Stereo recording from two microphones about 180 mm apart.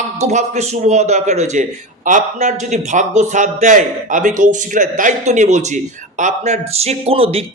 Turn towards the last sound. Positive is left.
turn(degrees=-30)  # may be behind; listen again after turning